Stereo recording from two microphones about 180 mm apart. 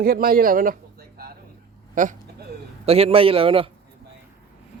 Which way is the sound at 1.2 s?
60° right (ahead or behind).